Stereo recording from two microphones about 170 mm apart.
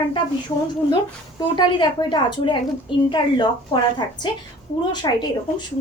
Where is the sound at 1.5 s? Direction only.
25° left (ahead or behind).